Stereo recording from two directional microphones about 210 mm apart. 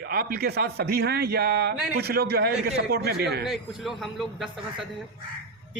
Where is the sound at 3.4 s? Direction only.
Centre (ahead or behind).